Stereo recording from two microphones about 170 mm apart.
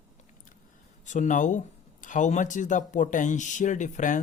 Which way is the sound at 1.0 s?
45° left (ahead or behind).